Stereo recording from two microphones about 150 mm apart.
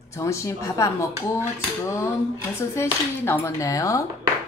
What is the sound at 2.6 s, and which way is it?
Speech, 15° left (ahead or behind).